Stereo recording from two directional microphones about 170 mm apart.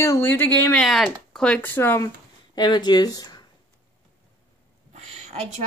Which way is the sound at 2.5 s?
25° left (ahead or behind).